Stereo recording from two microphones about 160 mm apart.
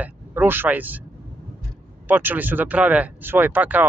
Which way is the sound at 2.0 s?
10° right (ahead or behind).